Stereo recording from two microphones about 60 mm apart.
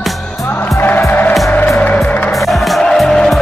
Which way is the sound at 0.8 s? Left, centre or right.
Left.